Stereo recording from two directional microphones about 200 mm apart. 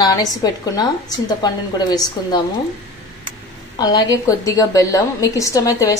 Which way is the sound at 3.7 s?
20° left (ahead or behind).